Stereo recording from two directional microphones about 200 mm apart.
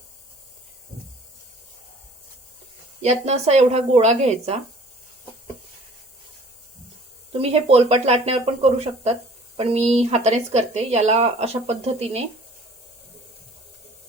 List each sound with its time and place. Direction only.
3.0 s speech: 35° right (ahead or behind)
7.3 s speech: 30° right (ahead or behind)